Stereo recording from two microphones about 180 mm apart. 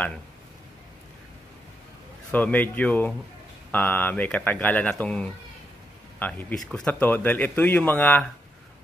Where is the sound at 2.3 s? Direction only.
10° left (ahead or behind).